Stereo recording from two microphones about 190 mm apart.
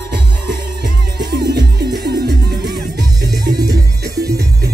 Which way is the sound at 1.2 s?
55° right (ahead or behind).